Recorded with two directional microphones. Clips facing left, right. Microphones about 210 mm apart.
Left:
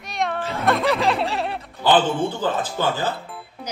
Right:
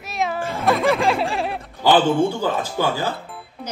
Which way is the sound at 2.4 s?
10° right (ahead or behind).